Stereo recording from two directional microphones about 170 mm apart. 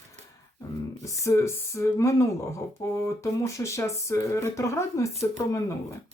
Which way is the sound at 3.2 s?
20° left (ahead or behind).